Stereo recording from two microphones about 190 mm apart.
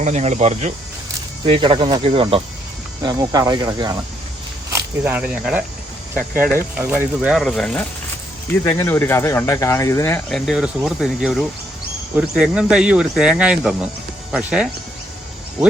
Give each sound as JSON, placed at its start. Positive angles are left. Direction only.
{"t": 0.0, "sound": "speech", "side_deg": -35}
{"t": 4.7, "sound": "speech", "side_deg": -10}
{"t": 10.3, "sound": "speech", "side_deg": 0}